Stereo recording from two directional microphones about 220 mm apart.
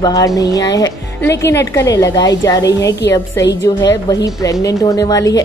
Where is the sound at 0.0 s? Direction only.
15° left (ahead or behind).